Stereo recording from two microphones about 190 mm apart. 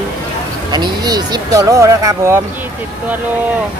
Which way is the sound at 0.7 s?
20° right (ahead or behind).